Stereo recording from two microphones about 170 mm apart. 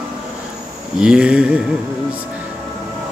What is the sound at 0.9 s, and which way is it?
Mantra, 5° right (ahead or behind).